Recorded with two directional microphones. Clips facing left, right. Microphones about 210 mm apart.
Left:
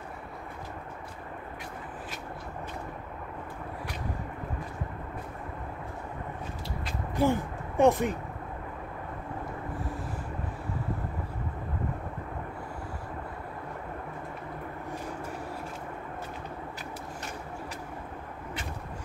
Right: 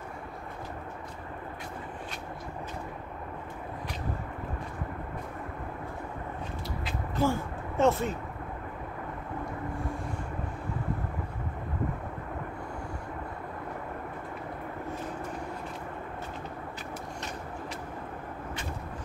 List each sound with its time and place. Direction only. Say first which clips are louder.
7.2 s speech: left 2 dB; 15° left (ahead or behind)